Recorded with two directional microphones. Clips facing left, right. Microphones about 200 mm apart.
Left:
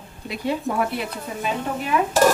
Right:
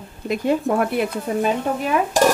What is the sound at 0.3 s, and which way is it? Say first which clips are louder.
A woman's voice: right 6 dB; 50° right (ahead or behind).